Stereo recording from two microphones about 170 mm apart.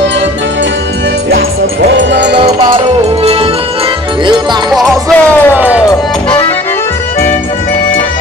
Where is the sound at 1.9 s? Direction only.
90° right.